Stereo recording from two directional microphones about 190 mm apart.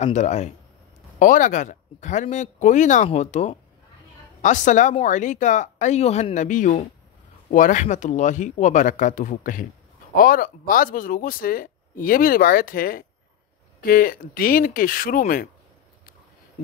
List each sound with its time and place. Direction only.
0.0 s speech: 35° left (ahead or behind)